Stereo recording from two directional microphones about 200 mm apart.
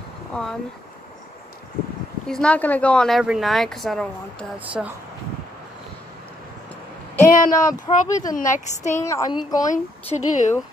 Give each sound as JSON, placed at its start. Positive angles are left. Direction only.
{"t": 0.3, "sound": "speech", "side_deg": 5}
{"t": 2.2, "sound": "speech", "side_deg": 5}
{"t": 7.2, "sound": "a woman's voice", "side_deg": 40}
{"t": 7.8, "sound": "speech", "side_deg": 20}
{"t": 8.4, "sound": "a woman's voice", "side_deg": 40}
{"t": 8.9, "sound": "speech", "side_deg": 15}
{"t": 9.7, "sound": "a woman's voice", "side_deg": 35}